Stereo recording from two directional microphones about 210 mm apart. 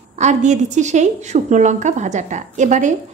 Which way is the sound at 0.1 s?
35° right (ahead or behind).